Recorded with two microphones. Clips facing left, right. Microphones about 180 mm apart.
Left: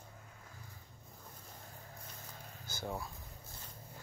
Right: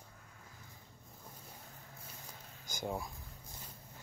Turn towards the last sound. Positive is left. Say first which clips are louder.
# right 2 dB
turn(degrees=-15)  # may be behind; listen again after turning